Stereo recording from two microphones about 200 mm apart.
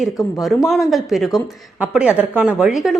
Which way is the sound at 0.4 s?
Centre (ahead or behind).